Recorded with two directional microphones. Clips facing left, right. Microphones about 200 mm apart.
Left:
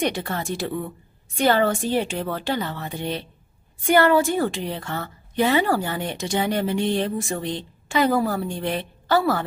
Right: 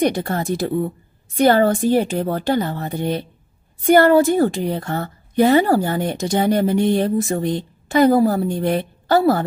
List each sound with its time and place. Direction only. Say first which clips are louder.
0.0 s a woman's voice: right 6 dB; 40° right (ahead or behind)